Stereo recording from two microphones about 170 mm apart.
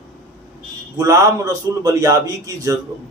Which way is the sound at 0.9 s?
20° right (ahead or behind).